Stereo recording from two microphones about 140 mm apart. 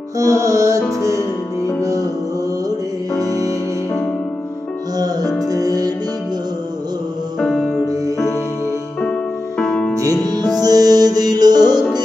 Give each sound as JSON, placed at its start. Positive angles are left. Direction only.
{"t": 0.2, "sound": "music", "side_deg": -20}
{"t": 3.2, "sound": "music", "side_deg": -25}
{"t": 4.9, "sound": "music", "side_deg": -25}
{"t": 7.3, "sound": "music", "side_deg": 5}
{"t": 9.6, "sound": "music", "side_deg": 5}
{"t": 10.3, "sound": "music", "side_deg": -30}